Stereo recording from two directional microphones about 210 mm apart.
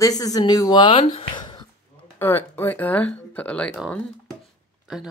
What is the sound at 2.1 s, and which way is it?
Speech, 10° left (ahead or behind).